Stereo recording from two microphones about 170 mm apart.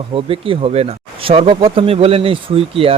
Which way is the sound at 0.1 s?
30° right (ahead or behind).